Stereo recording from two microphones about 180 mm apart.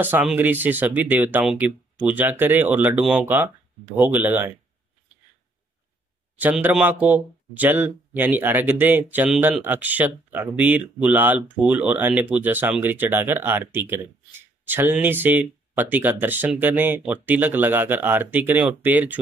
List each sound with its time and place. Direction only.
0.0 s speech: 10° right (ahead or behind)
6.3 s speech: 10° right (ahead or behind)